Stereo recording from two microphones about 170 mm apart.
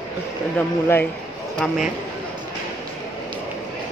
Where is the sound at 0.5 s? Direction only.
10° left (ahead or behind).